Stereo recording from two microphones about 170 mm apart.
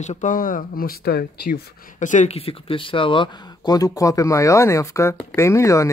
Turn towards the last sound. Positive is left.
turn(degrees=15)  # may be behind; listen again after turning